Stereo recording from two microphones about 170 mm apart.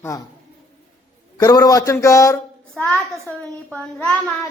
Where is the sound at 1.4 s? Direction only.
20° left (ahead or behind).